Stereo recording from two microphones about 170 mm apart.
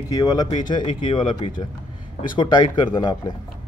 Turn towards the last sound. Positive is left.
turn(degrees=25)  # may be behind; listen again after turning